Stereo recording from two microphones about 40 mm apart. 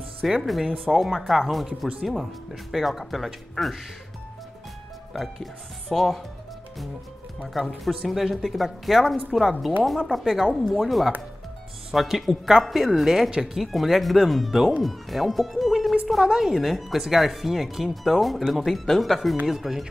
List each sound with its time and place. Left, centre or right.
0.4 s speech: centre
5.1 s speech: centre
7.4 s speech: centre